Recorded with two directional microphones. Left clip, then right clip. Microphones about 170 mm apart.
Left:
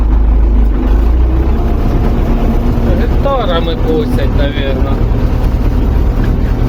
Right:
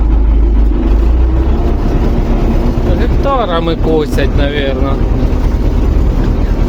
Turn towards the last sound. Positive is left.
turn(degrees=-45)  # may be behind; listen again after turning